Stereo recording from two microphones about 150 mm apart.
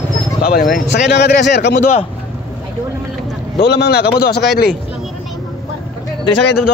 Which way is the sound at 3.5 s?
90° left.